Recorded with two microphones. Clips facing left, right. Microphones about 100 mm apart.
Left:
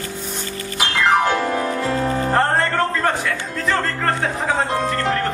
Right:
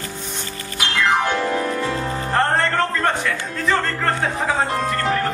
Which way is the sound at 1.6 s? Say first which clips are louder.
Left 2 dB; 40° left (ahead or behind).